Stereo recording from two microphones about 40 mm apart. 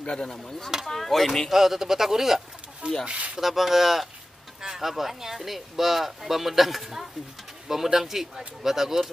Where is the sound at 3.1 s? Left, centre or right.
Right.